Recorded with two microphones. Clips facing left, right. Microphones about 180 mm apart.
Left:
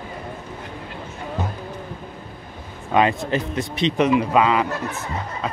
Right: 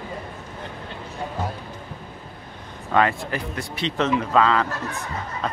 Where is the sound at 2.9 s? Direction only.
20° left (ahead or behind).